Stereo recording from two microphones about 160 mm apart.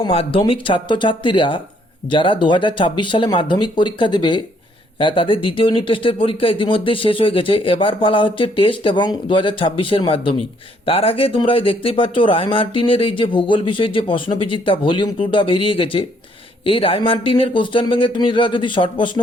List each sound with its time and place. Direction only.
0.0 s speech: 35° left (ahead or behind)